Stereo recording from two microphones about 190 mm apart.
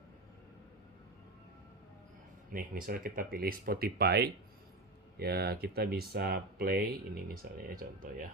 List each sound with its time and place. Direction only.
2.5 s speech: 50° right (ahead or behind)